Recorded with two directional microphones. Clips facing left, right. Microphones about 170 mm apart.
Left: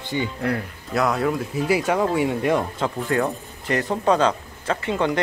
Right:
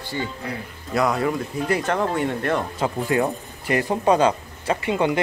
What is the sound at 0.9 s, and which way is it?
Speech, centre (ahead or behind).